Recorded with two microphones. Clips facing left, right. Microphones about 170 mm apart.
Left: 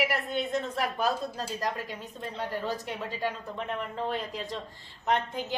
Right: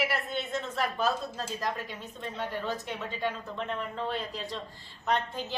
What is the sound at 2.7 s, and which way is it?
A woman's voice, 10° left (ahead or behind).